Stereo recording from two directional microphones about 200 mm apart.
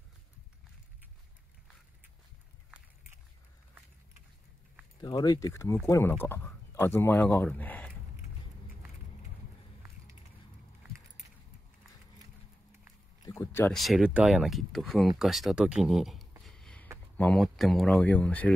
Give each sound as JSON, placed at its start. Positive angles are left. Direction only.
{"t": 5.0, "sound": "speech", "side_deg": 20}
{"t": 13.2, "sound": "a sound", "side_deg": 15}
{"t": 13.7, "sound": "speech", "side_deg": 0}